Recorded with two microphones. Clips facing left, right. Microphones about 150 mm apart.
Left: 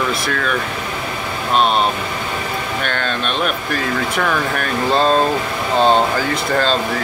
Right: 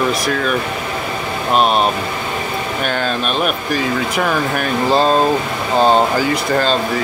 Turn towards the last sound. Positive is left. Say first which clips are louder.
# right 1 dB
turn(degrees=-5)  # may be behind; listen again after turning